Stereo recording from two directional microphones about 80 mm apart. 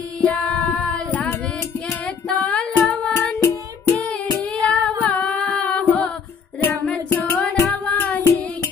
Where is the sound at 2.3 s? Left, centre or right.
Centre.